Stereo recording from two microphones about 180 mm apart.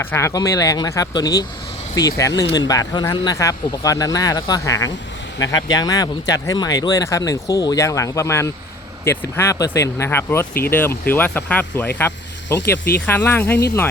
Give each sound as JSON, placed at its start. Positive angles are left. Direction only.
{"t": 0.0, "sound": "speech", "side_deg": 15}